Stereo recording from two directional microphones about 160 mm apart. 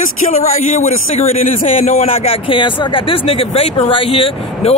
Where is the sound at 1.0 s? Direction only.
40° left (ahead or behind).